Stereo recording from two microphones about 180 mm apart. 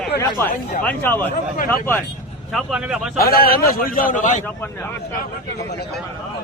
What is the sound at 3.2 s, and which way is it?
A man's voice, 55° left (ahead or behind).